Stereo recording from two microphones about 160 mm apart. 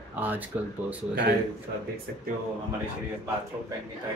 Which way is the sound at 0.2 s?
10° right (ahead or behind).